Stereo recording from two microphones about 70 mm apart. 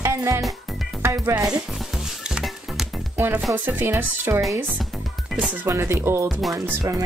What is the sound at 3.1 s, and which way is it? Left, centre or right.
Music, right.